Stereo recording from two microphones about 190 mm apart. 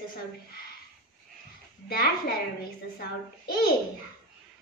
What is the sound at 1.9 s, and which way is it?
Speech, 55° left (ahead or behind).